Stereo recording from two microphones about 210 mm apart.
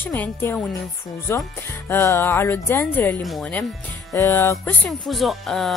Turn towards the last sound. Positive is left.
turn(degrees=0)  # may be behind; listen again after turning